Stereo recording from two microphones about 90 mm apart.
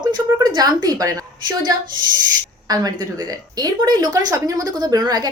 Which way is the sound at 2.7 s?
45° right (ahead or behind).